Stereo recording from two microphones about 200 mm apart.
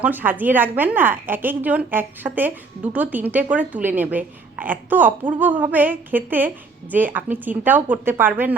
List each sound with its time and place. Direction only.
0.0 s a woman's voice: 10° right (ahead or behind)